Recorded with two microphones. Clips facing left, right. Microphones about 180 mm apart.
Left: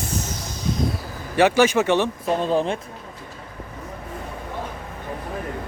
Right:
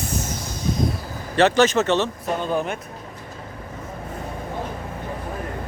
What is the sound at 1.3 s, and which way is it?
Speech, 10° left (ahead or behind).